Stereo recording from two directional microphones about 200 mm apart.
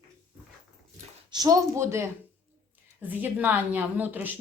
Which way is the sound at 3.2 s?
10° right (ahead or behind).